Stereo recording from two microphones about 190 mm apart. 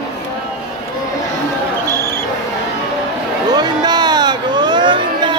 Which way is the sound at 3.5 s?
20° right (ahead or behind).